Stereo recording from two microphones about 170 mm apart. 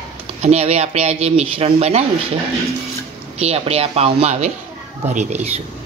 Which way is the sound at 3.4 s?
35° right (ahead or behind).